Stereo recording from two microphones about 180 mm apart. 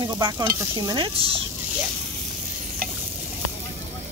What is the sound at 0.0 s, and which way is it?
Stir, 25° right (ahead or behind).